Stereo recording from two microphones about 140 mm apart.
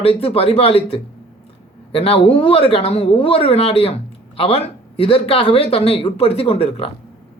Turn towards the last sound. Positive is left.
turn(degrees=45)  # may be behind; listen again after turning